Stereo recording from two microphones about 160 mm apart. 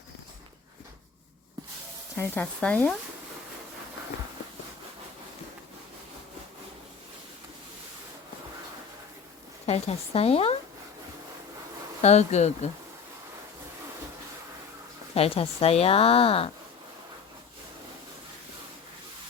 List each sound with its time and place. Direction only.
2.1 s speech: 15° left (ahead or behind)
9.6 s speech: 40° left (ahead or behind)
12.0 s speech: 45° left (ahead or behind)
15.1 s speech: 40° left (ahead or behind)